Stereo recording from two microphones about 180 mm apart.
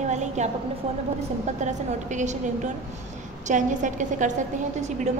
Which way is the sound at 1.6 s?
40° right (ahead or behind).